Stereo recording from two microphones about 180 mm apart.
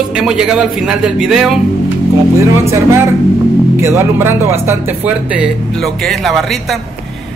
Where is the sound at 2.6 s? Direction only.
15° right (ahead or behind).